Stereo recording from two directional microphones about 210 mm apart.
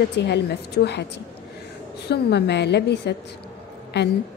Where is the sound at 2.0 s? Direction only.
50° left (ahead or behind).